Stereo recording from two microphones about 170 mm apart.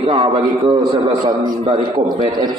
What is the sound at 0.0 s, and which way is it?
A man's voice, 30° right (ahead or behind).